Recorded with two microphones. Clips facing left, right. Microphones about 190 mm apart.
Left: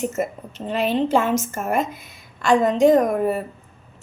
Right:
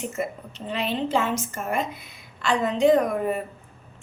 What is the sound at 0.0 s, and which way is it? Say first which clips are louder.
A woman's voice: left 5 dB; 45° left (ahead or behind).